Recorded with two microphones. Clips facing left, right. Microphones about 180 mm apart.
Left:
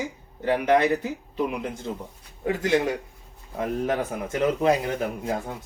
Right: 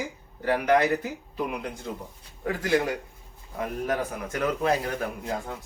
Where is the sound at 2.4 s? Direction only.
20° left (ahead or behind).